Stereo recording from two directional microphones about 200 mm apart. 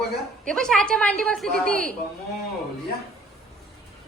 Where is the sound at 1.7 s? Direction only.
45° right (ahead or behind).